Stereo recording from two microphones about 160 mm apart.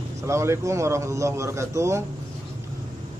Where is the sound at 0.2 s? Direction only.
15° right (ahead or behind).